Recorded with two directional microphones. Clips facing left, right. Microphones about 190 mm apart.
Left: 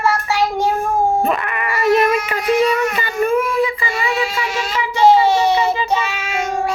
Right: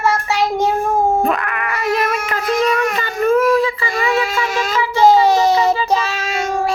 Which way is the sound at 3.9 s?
45° right (ahead or behind).